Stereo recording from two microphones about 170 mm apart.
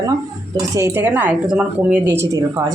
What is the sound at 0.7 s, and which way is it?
A woman's voice, 15° right (ahead or behind).